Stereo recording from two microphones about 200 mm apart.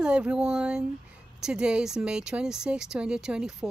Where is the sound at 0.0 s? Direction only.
5° right (ahead or behind).